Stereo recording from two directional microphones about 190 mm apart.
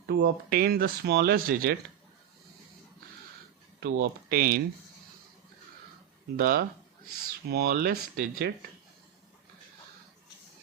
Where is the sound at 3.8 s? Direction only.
60° right (ahead or behind).